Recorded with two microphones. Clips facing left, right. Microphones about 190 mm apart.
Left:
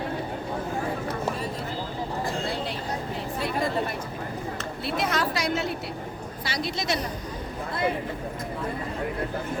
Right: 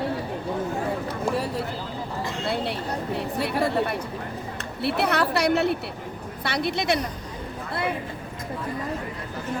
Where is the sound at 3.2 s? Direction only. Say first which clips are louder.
Right 3 dB; 65° right (ahead or behind).